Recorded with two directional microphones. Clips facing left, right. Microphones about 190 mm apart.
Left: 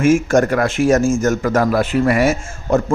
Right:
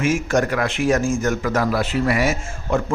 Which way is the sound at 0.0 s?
50° left (ahead or behind).